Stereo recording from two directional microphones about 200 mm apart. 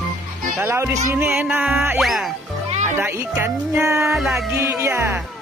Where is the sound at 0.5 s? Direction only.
10° right (ahead or behind).